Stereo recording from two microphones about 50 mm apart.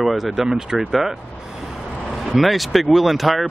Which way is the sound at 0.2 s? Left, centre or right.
Centre.